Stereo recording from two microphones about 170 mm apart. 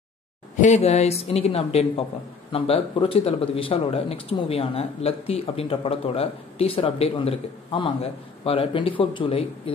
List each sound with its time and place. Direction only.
0.6 s speech: 40° left (ahead or behind)